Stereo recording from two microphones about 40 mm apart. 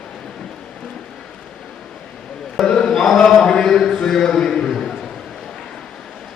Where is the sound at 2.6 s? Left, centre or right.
Centre.